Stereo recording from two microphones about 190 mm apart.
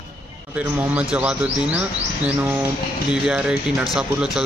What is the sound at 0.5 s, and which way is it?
Speech, 10° right (ahead or behind).